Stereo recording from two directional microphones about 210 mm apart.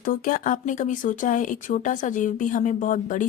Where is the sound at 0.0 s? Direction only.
40° left (ahead or behind).